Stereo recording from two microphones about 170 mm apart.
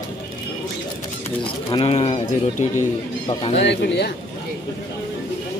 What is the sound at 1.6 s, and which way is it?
Speech, 35° left (ahead or behind).